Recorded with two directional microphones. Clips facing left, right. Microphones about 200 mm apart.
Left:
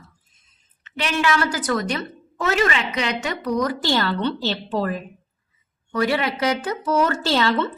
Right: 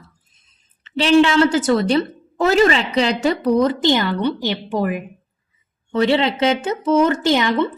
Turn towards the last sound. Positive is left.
turn(degrees=-15)  # may be behind; listen again after turning